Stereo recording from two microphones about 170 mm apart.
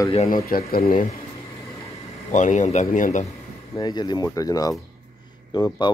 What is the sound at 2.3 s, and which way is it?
Speech, 45° left (ahead or behind).